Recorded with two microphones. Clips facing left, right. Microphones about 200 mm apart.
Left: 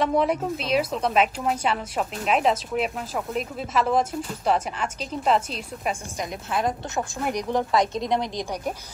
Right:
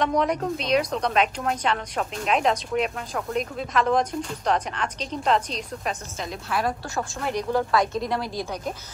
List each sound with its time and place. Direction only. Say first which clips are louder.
0.0 s a woman's voice: left 1 dB; 5° left (ahead or behind)
6.5 s a woman's voice: left 1 dB; 20° left (ahead or behind)